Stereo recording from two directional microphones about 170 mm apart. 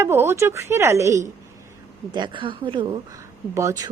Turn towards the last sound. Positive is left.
turn(degrees=-20)  # may be behind; listen again after turning